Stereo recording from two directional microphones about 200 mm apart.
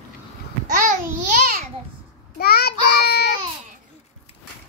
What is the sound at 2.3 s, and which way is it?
Child singing, 50° left (ahead or behind).